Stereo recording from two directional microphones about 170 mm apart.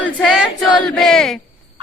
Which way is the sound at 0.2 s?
Centre (ahead or behind).